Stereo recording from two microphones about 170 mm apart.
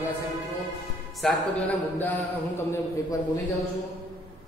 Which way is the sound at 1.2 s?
5° left (ahead or behind).